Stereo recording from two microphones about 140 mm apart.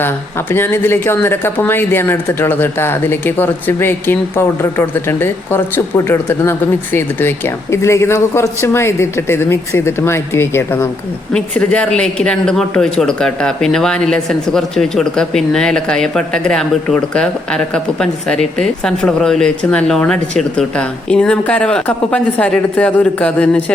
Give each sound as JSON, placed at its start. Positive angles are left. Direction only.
{"t": 0.0, "sound": "speech", "side_deg": 15}